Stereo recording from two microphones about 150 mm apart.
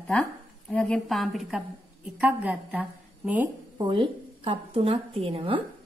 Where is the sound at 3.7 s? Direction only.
35° right (ahead or behind).